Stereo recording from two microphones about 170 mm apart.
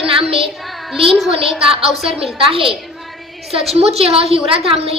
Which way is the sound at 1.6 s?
35° right (ahead or behind).